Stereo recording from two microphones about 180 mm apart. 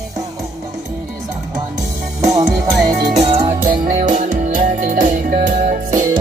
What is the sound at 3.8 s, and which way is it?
Music, 45° right (ahead or behind).